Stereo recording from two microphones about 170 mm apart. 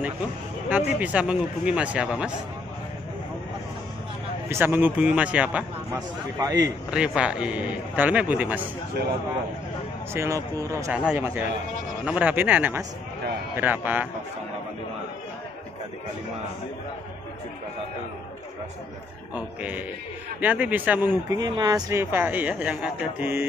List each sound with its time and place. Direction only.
0.7 s speech: 10° right (ahead or behind)
4.5 s speech: 15° right (ahead or behind)
5.9 s speech: 20° right (ahead or behind)
6.9 s speech: 5° right (ahead or behind)
10.1 s speech: 20° right (ahead or behind)
19.3 s speech: 10° right (ahead or behind)
21.4 s speech: 25° right (ahead or behind)